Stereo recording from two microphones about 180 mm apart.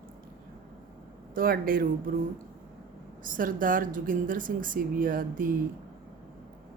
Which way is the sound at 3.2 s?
50° right (ahead or behind).